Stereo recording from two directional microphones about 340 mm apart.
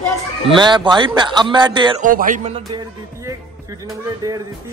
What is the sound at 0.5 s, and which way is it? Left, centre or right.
A man's voice, centre.